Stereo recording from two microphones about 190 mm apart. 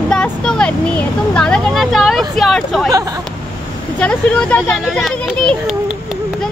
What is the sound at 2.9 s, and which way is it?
Speech, 20° right (ahead or behind).